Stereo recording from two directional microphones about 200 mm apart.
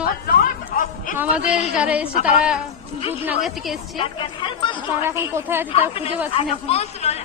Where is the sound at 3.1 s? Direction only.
5° right (ahead or behind).